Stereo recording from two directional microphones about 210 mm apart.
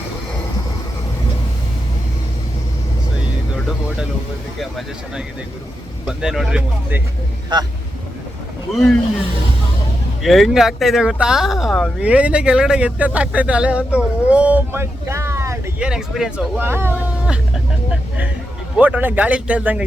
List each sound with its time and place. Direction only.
6.1 s speech: centre (ahead or behind)
7.5 s speech: 20° right (ahead or behind)
10.2 s speech: centre (ahead or behind)
18.8 s speech: 5° right (ahead or behind)